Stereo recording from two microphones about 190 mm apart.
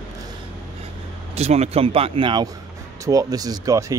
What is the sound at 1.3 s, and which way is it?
Speech, 35° right (ahead or behind).